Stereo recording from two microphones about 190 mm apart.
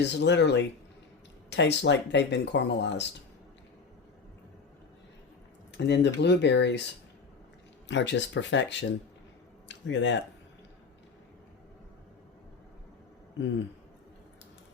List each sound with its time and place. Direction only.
0.0 s speech: 65° left (ahead or behind)
5.7 s speech: 65° left (ahead or behind)
7.9 s speech: 70° left (ahead or behind)